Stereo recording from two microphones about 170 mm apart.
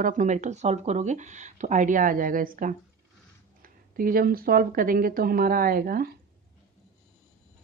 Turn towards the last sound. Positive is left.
turn(degrees=-60)  # may be behind; listen again after turning